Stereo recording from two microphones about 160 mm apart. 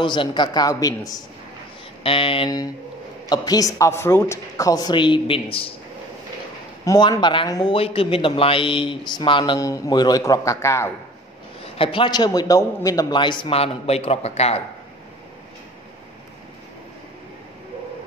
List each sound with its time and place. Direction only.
0.0 s a man's voice: 30° left (ahead or behind)
2.0 s a man's voice: 35° left (ahead or behind)
6.8 s a man's voice: 25° left (ahead or behind)
11.6 s a man's voice: 35° left (ahead or behind)